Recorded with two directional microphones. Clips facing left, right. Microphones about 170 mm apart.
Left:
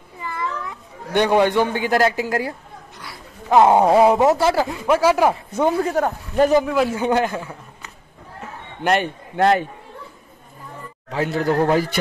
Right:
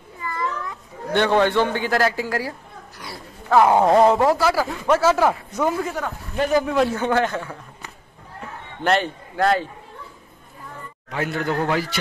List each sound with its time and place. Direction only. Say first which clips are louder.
0.2 s a sound: even; 10° left (ahead or behind)
1.1 s a man's voice: left 2 dB; 15° left (ahead or behind)
3.8 s a man's voice: left 1 dB; 10° left (ahead or behind)
4.2 s speech: left 2 dB; 25° left (ahead or behind)
4.8 s a man's voice: left 1 dB; 10° left (ahead or behind)
5.5 s a man's voice: left 3 dB; 30° left (ahead or behind)
5.9 s speech: left 7 dB; 45° left (ahead or behind)
6.6 s a man's voice: even; 5° left (ahead or behind)
7.1 s a man's voice: left 1 dB; 15° left (ahead or behind)
8.8 s a man's voice: left 1 dB; 15° left (ahead or behind)
11.1 s a man's voice: left 4 dB; 30° left (ahead or behind)